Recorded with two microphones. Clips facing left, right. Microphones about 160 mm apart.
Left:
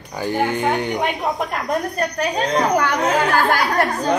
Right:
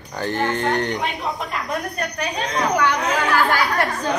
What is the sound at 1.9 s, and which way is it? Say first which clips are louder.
Speech: left 5 dB; 40° left (ahead or behind).